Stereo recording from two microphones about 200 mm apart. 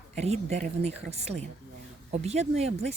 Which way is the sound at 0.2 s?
35° right (ahead or behind).